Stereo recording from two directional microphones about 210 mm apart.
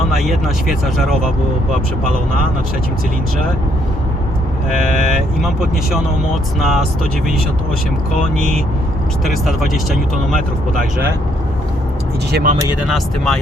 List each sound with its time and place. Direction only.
0.1 s speech: centre (ahead or behind)
5.4 s speech: centre (ahead or behind)
9.2 s speech: centre (ahead or behind)
12.3 s speech: 40° right (ahead or behind)
12.9 s speech: centre (ahead or behind)